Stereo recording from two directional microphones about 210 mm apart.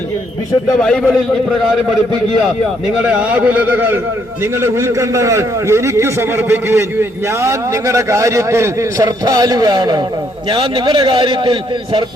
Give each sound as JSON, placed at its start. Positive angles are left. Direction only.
{"t": 0.8, "sound": "a man's voice", "side_deg": 0}
{"t": 3.1, "sound": "a man's voice", "side_deg": -5}